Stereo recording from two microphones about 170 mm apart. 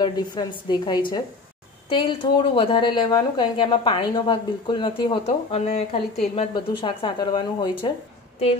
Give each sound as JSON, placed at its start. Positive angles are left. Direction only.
{"t": 0.0, "sound": "speech", "side_deg": 25}
{"t": 5.2, "sound": "speech", "side_deg": 40}